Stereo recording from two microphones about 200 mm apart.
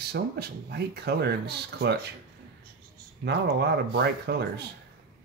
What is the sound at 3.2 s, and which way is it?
Speech, 55° right (ahead or behind).